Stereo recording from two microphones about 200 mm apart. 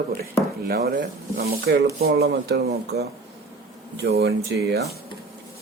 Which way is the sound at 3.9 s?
55° right (ahead or behind).